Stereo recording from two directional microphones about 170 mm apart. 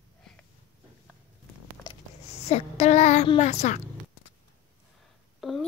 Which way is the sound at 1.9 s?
25° left (ahead or behind).